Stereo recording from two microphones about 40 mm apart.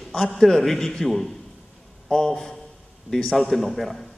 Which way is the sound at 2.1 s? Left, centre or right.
Centre.